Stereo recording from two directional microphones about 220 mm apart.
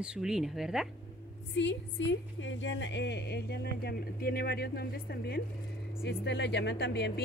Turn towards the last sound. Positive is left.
turn(degrees=50)  # may be behind; listen again after turning